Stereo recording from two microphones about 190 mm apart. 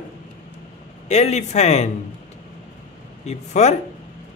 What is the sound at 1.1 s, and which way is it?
Speech, 35° left (ahead or behind).